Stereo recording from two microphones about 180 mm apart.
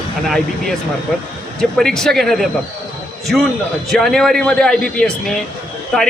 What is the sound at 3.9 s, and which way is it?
A man's voice, centre (ahead or behind).